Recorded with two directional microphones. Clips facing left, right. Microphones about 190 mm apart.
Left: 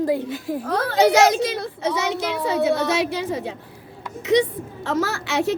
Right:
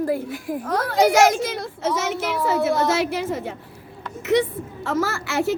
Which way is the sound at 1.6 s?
65° left (ahead or behind).